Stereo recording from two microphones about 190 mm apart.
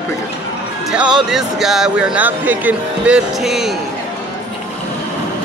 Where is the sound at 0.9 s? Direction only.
5° right (ahead or behind).